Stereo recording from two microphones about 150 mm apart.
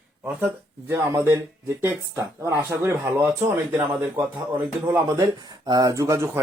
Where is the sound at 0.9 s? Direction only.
20° right (ahead or behind).